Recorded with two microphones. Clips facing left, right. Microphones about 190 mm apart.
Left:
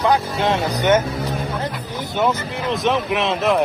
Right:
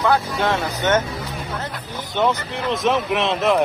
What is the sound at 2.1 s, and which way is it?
Speech, 5° left (ahead or behind).